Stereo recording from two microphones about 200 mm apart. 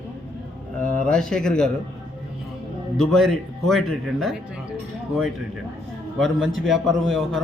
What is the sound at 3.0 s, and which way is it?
Speech, centre (ahead or behind).